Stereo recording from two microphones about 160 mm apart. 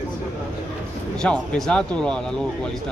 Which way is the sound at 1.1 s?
5° left (ahead or behind).